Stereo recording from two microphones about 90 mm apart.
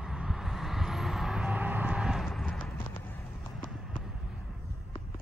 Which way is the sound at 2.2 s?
5° left (ahead or behind).